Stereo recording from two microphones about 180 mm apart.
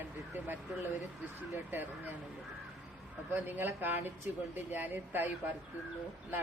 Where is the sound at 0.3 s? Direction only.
10° right (ahead or behind).